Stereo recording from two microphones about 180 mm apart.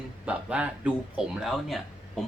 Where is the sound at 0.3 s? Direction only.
5° right (ahead or behind).